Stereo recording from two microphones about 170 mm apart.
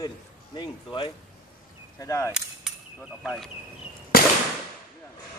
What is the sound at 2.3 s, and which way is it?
Cap gun, 5° right (ahead or behind).